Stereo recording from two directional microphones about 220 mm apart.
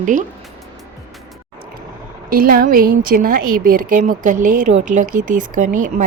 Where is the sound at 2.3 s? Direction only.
40° right (ahead or behind).